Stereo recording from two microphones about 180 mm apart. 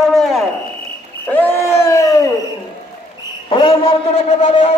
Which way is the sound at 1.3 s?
10° left (ahead or behind).